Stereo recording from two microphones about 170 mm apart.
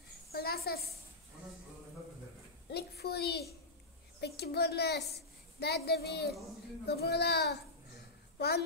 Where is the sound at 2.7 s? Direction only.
70° left (ahead or behind).